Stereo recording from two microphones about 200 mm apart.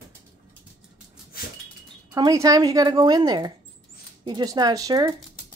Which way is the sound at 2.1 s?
15° right (ahead or behind).